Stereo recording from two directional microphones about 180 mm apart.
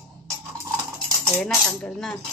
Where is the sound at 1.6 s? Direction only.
5° left (ahead or behind).